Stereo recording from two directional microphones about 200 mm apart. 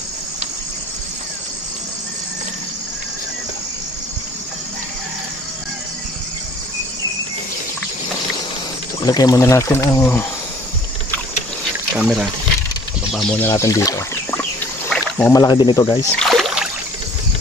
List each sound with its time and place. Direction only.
9.0 s speech: 20° left (ahead or behind)
11.9 s speech: centre (ahead or behind); by 14.4 s 15° left (ahead or behind)
14.9 s a sound: 10° left (ahead or behind)
15.3 s speech: 20° left (ahead or behind)
16.2 s rowboat: centre (ahead or behind)